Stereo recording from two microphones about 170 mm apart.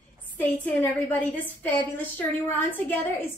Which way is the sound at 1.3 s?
10° left (ahead or behind).